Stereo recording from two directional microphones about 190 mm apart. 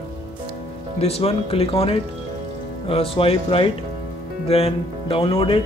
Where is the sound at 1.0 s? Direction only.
30° left (ahead or behind).